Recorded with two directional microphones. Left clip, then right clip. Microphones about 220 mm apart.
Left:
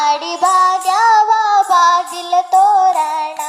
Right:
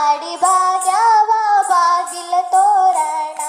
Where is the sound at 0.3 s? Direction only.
20° left (ahead or behind).